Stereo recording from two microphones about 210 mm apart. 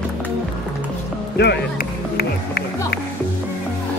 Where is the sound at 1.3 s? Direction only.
50° left (ahead or behind).